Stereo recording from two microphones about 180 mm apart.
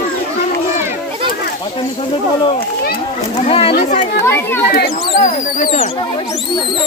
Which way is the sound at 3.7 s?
45° left (ahead or behind).